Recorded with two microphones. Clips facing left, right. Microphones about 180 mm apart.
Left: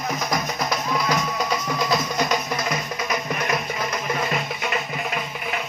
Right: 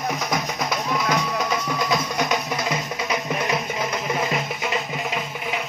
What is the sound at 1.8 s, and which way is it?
Music, 5° left (ahead or behind).